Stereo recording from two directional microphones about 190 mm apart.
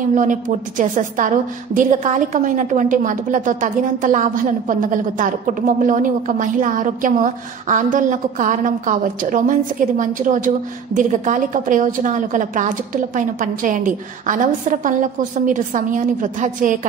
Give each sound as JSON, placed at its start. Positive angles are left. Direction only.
{"t": 0.1, "sound": "a woman's voice", "side_deg": -40}